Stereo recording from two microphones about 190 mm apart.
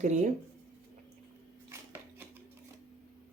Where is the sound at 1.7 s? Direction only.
10° right (ahead or behind).